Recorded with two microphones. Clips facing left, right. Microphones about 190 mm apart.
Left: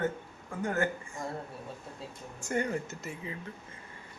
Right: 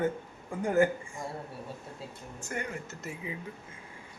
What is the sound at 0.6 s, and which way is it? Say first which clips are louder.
Speech: right 5 dB; 10° right (ahead or behind).